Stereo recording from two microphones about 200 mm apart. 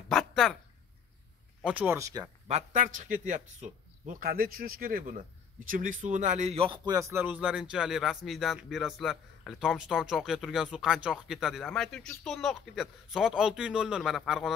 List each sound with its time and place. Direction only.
1.6 s speech: 5° right (ahead or behind)
2.4 s speech: 35° right (ahead or behind); by 14.5 s centre (ahead or behind)